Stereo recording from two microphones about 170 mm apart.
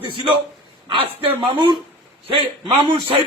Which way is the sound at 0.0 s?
30° right (ahead or behind).